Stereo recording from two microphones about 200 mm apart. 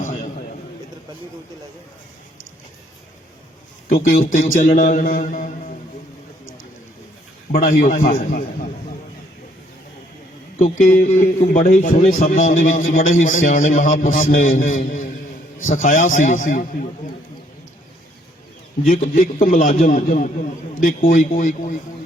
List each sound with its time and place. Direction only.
3.8 s a man's voice: 40° left (ahead or behind)
7.5 s a man's voice: 35° left (ahead or behind)
10.6 s a man's voice: 40° left (ahead or behind)
18.9 s a man's voice: 40° left (ahead or behind)